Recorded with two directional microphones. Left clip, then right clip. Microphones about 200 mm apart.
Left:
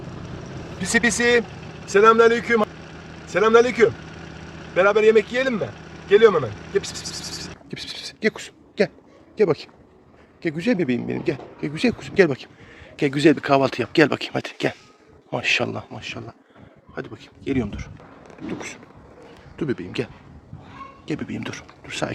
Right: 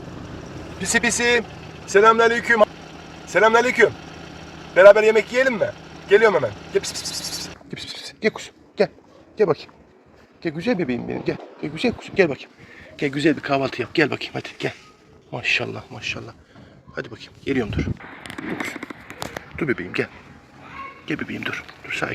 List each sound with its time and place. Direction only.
0.8 s speech: 15° right (ahead or behind)
7.7 s a sound: 20° left (ahead or behind)
9.4 s speech: 35° left (ahead or behind); by 17.8 s 15° left (ahead or behind)
19.5 s speech: 10° left (ahead or behind)
21.1 s speech: 25° left (ahead or behind)